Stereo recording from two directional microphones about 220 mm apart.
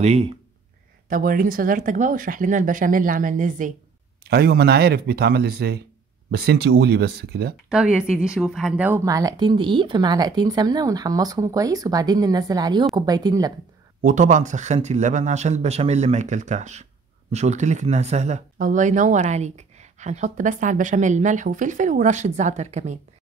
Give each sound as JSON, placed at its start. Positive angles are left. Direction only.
{"t": 0.0, "sound": "speech", "side_deg": -30}
{"t": 1.0, "sound": "speech", "side_deg": -40}
{"t": 7.7, "sound": "speech", "side_deg": -5}
{"t": 14.0, "sound": "speech", "side_deg": -35}